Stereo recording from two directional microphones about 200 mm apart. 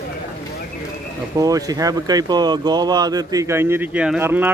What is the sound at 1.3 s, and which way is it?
Speech, 15° right (ahead or behind).